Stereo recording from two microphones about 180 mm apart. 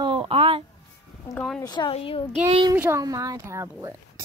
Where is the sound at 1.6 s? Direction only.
25° left (ahead or behind).